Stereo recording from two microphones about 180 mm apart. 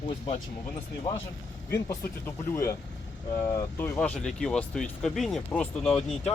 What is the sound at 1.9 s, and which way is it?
Speech, 15° left (ahead or behind).